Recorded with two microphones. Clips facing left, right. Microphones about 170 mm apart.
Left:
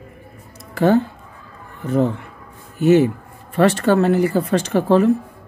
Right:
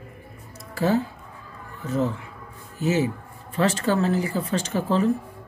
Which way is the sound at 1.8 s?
60° left (ahead or behind).